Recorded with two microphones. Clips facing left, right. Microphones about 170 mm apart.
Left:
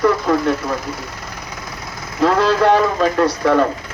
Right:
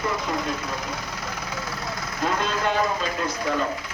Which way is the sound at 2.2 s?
85° left.